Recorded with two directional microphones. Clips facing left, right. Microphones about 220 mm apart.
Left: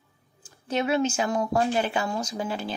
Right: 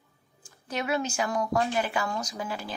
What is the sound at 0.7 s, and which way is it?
A woman's voice, 25° left (ahead or behind).